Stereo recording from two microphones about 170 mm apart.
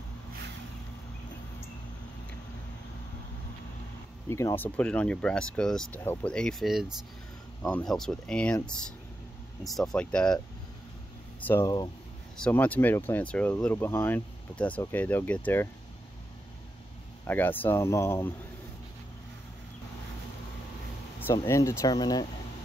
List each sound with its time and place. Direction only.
4.3 s speech: 15° left (ahead or behind)
11.4 s speech: 15° left (ahead or behind)
12.4 s speech: 10° left (ahead or behind)
17.3 s speech: 10° left (ahead or behind)
21.2 s speech: 15° left (ahead or behind)